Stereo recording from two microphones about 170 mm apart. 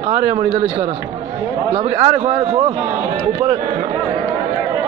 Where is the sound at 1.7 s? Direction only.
40° right (ahead or behind).